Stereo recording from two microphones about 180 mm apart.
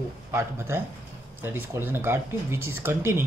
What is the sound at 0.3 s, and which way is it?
Speech, 15° right (ahead or behind).